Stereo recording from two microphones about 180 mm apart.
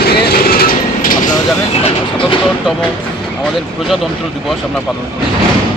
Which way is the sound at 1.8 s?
30° left (ahead or behind).